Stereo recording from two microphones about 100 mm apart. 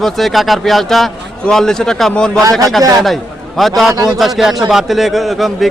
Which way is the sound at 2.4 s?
35° right (ahead or behind).